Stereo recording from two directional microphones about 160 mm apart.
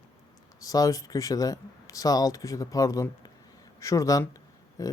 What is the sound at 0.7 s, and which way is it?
Speech, 20° left (ahead or behind).